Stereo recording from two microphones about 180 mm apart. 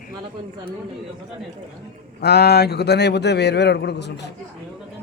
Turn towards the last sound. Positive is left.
turn(degrees=70)  # may be behind; listen again after turning